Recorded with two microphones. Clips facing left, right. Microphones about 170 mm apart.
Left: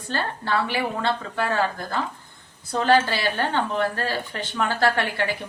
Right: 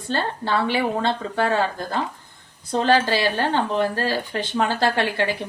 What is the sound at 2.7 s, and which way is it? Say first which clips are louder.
Speech: right 1 dB; 30° right (ahead or behind).